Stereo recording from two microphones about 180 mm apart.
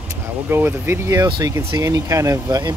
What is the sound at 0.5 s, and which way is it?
Speech, 15° right (ahead or behind).